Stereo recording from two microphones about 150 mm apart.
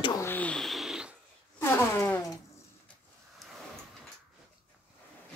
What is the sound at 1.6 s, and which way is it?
Fart, 15° left (ahead or behind).